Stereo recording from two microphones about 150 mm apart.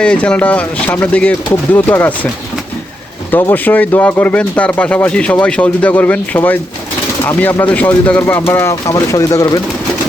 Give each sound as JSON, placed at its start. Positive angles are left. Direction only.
{"t": 0.0, "sound": "speech", "side_deg": 5}
{"t": 3.3, "sound": "speech", "side_deg": 10}